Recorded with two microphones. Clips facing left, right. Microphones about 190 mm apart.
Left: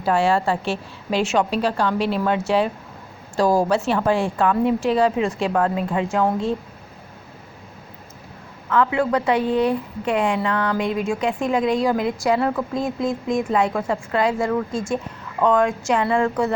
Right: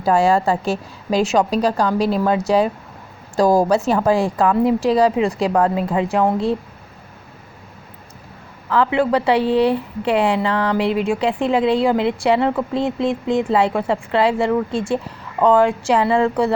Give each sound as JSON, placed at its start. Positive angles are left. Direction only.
{"t": 0.0, "sound": "a woman's voice", "side_deg": -40}
{"t": 8.7, "sound": "a woman's voice", "side_deg": -30}